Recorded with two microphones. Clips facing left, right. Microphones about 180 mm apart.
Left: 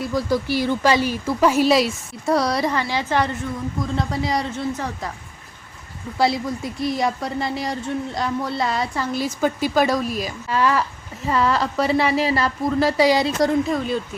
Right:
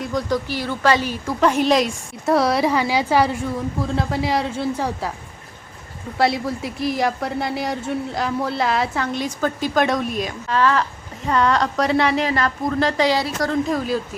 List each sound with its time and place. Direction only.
0.0 s speech: 5° left (ahead or behind)
6.1 s speech: centre (ahead or behind)
13.2 s speech: 20° left (ahead or behind)
13.7 s speech: 5° right (ahead or behind)